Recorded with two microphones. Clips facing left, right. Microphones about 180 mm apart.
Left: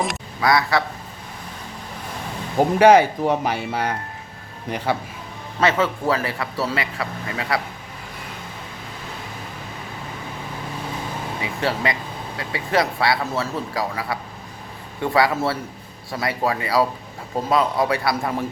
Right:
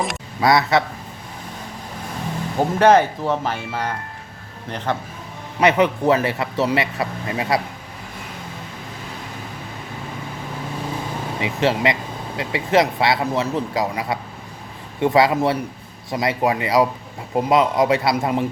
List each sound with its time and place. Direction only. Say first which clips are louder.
0.4 s speech: right 2 dB; 25° right (ahead or behind)
2.6 s speech: left 1 dB; 10° left (ahead or behind)
5.5 s speech: right 4 dB; 20° right (ahead or behind)
11.3 s speech: right 5 dB; 20° right (ahead or behind)